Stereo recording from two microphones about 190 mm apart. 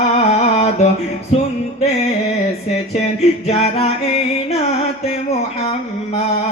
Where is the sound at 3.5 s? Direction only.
35° left (ahead or behind).